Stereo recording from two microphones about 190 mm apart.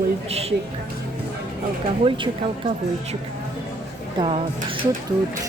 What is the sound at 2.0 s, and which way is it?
Speech, 25° right (ahead or behind).